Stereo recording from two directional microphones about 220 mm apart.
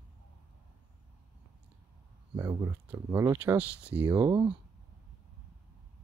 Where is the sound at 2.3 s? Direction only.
10° right (ahead or behind).